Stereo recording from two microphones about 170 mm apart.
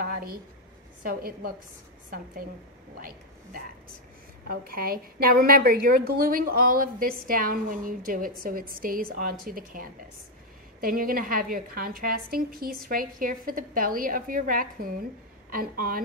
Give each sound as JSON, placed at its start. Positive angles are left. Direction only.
{"t": 0.0, "sound": "a sound", "side_deg": -60}
{"t": 1.0, "sound": "a woman's voice", "side_deg": -60}
{"t": 4.5, "sound": "a woman's voice", "side_deg": -60}